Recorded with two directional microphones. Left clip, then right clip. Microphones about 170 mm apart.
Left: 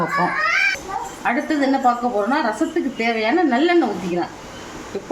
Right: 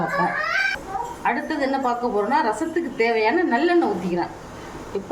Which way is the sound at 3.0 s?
30° left (ahead or behind).